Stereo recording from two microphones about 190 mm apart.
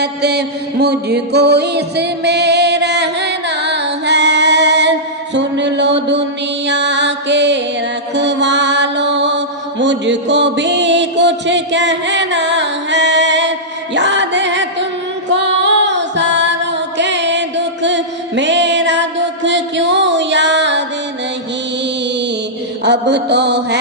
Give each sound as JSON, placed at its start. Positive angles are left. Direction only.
{"t": 0.0, "sound": "music", "side_deg": -60}
{"t": 8.1, "sound": "mantra", "side_deg": -65}
{"t": 13.9, "sound": "music", "side_deg": -65}
{"t": 22.8, "sound": "a sound", "side_deg": -65}